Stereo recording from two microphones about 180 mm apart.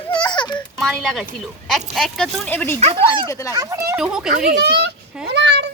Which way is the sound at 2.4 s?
10° left (ahead or behind).